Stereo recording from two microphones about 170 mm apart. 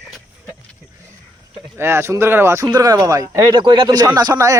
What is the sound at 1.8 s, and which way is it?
Speech, 15° right (ahead or behind).